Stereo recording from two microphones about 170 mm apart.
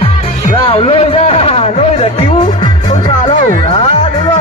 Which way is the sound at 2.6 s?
30° left (ahead or behind).